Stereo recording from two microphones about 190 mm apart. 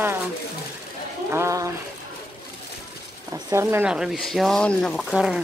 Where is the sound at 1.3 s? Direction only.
15° right (ahead or behind).